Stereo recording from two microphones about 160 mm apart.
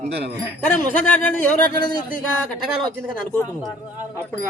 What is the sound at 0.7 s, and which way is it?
Speech, 10° left (ahead or behind).